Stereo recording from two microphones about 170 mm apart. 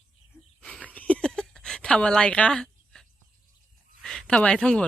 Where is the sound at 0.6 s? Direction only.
5° left (ahead or behind).